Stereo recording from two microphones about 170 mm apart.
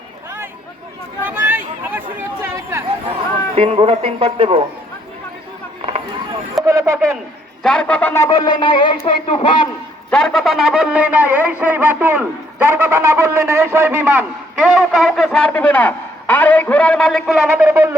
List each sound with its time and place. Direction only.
1.2 s chatter: 10° right (ahead or behind)
3.5 s speech: 35° right (ahead or behind)
6.7 s speech: 20° right (ahead or behind)
7.6 s speech: 5° left (ahead or behind); by 9.6 s 30° left (ahead or behind)
10.1 s a sound: 5° left (ahead or behind)
12.6 s a man's voice: 15° right (ahead or behind)